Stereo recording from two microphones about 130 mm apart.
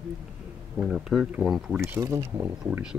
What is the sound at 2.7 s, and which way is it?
Speech, 5° right (ahead or behind).